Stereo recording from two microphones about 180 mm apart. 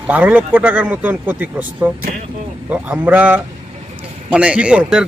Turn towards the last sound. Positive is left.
turn(degrees=-5)  # may be behind; listen again after turning